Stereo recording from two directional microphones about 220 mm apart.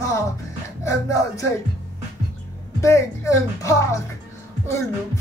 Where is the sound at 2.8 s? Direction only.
15° left (ahead or behind).